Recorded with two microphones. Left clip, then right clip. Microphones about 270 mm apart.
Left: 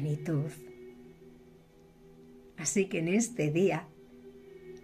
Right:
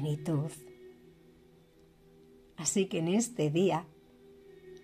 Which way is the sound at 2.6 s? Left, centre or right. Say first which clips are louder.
Left 1 dB; right.